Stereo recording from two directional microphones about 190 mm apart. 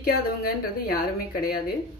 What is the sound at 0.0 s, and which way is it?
A woman's voice, 55° left (ahead or behind).